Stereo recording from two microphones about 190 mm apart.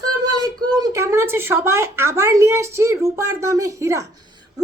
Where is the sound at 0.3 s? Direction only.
20° right (ahead or behind).